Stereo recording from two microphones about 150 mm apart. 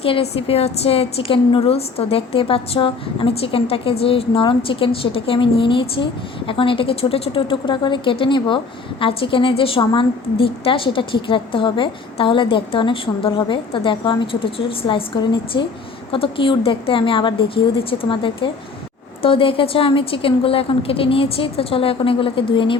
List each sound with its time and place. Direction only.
0.0 s a woman's voice: 40° left (ahead or behind)